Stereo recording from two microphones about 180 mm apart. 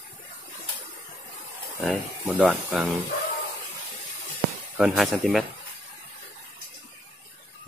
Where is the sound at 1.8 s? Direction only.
Centre (ahead or behind).